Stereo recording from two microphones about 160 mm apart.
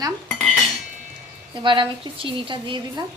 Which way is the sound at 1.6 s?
30° right (ahead or behind).